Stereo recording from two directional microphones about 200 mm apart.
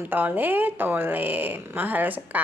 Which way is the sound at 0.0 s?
10° right (ahead or behind).